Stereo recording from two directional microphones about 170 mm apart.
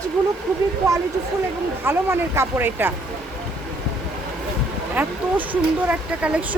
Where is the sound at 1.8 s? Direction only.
15° right (ahead or behind).